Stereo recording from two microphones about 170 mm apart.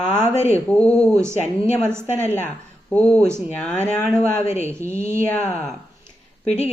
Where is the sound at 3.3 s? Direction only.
15° right (ahead or behind).